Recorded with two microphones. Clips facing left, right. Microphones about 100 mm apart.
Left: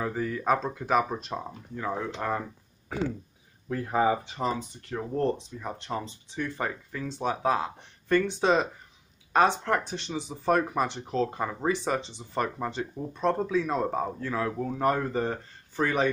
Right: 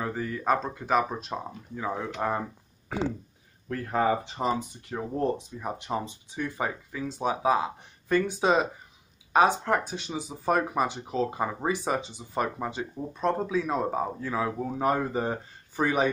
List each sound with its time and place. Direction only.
0.0 s speech: centre (ahead or behind)
2.2 s speech: 15° right (ahead or behind)
3.6 s speech: 15° left (ahead or behind)
4.4 s speech: 15° right (ahead or behind)